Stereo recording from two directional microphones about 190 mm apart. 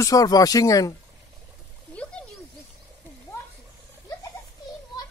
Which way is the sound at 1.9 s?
5° left (ahead or behind).